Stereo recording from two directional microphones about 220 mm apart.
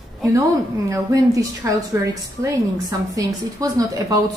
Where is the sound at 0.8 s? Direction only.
15° right (ahead or behind).